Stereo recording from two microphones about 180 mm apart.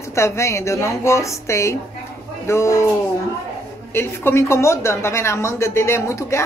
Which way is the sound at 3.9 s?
15° left (ahead or behind).